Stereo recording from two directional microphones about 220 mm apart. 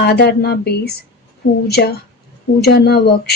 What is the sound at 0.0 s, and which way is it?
A woman's voice, 50° left (ahead or behind).